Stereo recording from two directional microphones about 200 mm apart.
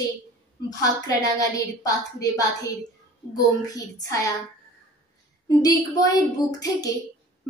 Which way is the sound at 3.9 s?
15° left (ahead or behind).